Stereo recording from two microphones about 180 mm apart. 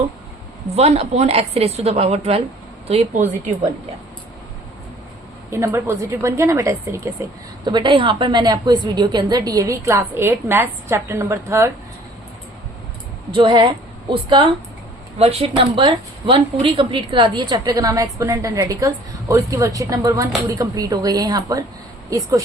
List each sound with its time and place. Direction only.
0.8 s a woman's voice: 35° right (ahead or behind)
5.5 s a woman's voice: 15° right (ahead or behind)
13.3 s a woman's voice: 25° right (ahead or behind)